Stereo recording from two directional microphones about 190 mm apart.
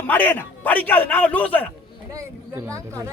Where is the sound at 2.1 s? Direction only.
15° right (ahead or behind).